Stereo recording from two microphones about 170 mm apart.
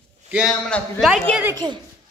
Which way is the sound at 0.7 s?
Centre (ahead or behind).